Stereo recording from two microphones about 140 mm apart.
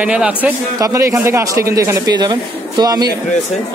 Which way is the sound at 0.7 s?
20° right (ahead or behind).